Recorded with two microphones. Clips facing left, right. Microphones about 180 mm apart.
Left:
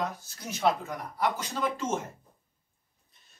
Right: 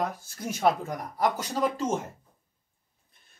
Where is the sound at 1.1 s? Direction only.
40° right (ahead or behind).